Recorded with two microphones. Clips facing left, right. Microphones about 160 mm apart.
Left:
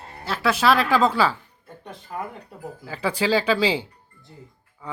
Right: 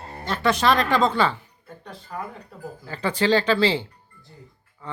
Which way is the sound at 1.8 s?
15° left (ahead or behind).